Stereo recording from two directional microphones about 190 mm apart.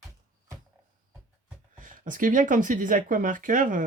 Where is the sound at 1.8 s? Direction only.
45° right (ahead or behind).